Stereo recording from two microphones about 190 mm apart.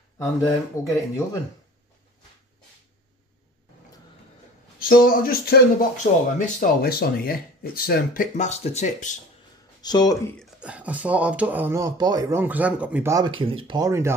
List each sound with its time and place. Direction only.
0.2 s speech: 15° left (ahead or behind)
4.7 s speech: 50° left (ahead or behind)
9.8 s speech: 20° left (ahead or behind)
10.4 s speech: 5° right (ahead or behind)